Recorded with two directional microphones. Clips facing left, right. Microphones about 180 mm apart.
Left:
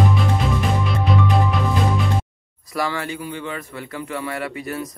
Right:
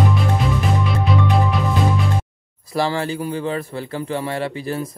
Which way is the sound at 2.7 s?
30° right (ahead or behind).